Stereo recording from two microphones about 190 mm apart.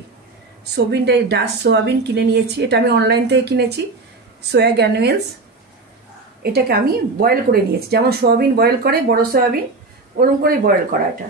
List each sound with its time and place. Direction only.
0.7 s a woman's voice: 60° right (ahead or behind)
6.4 s a woman's voice: 55° right (ahead or behind)